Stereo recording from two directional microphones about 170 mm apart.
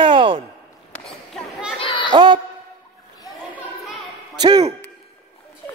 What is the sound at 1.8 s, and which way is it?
Children playing, 30° left (ahead or behind).